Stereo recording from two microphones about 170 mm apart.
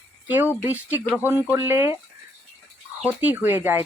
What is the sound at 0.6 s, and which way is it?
Speech, 10° right (ahead or behind).